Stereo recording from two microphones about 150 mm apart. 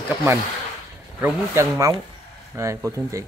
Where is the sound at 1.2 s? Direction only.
15° right (ahead or behind).